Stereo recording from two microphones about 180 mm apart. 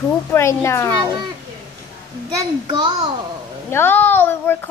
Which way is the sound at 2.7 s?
25° right (ahead or behind).